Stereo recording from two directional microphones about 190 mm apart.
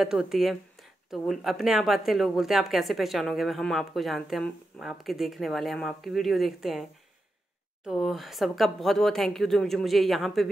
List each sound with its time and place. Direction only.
0.0 s speech: centre (ahead or behind)